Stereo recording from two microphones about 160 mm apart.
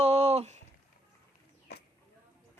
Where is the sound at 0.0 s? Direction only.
40° right (ahead or behind).